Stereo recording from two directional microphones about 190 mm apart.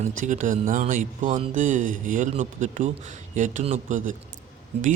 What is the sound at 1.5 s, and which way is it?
Speech, 40° right (ahead or behind).